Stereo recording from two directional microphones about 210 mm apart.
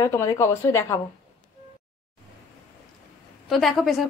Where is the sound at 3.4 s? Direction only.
Centre (ahead or behind).